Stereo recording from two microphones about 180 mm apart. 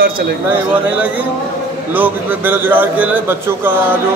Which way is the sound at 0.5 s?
10° right (ahead or behind).